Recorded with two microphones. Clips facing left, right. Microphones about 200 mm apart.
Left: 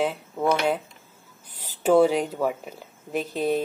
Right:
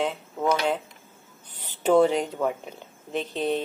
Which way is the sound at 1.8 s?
5° left (ahead or behind).